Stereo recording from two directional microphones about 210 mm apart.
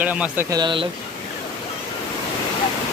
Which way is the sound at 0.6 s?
25° right (ahead or behind).